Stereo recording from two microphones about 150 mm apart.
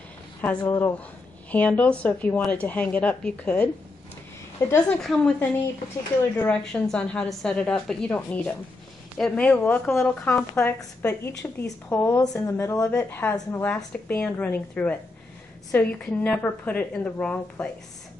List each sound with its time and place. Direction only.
0.7 s a woman's voice: 15° left (ahead or behind)
4.9 s a woman's voice: 5° left (ahead or behind)